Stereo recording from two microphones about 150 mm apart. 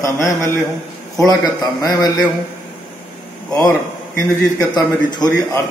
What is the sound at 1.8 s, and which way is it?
Speech, 25° left (ahead or behind).